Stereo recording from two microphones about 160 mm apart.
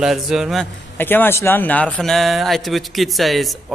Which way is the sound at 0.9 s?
15° left (ahead or behind).